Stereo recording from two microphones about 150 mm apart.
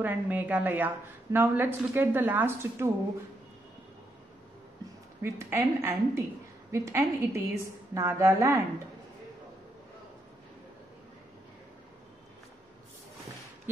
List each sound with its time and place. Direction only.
0.0 s a woman's voice: 10° right (ahead or behind)
5.2 s a woman's voice: 15° right (ahead or behind)